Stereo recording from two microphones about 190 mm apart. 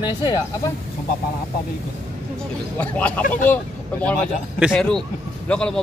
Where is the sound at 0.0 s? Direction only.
20° left (ahead or behind).